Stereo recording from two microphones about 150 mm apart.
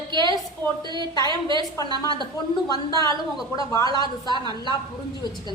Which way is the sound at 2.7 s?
25° left (ahead or behind).